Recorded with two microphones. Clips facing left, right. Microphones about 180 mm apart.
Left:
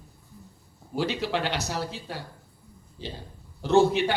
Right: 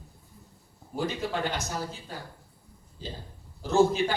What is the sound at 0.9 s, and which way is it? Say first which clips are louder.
A man's voice: left 3 dB; 75° left (ahead or behind).